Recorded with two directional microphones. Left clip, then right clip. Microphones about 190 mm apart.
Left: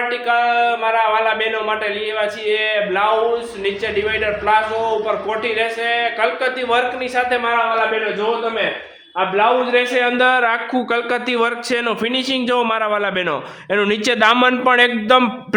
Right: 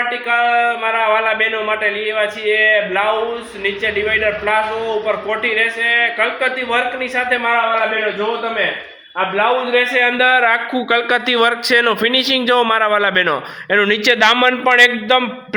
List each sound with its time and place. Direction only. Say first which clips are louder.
0.3 s a man's voice: right 1 dB; 15° left (ahead or behind)
4.1 s a man's voice: left 1 dB; 15° left (ahead or behind)
9.1 s a man's voice: even; 15° left (ahead or behind)
14.3 s a man's voice: right 2 dB; 30° left (ahead or behind)